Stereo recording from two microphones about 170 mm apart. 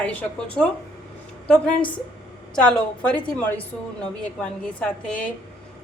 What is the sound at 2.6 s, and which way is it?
A woman's voice, 5° left (ahead or behind).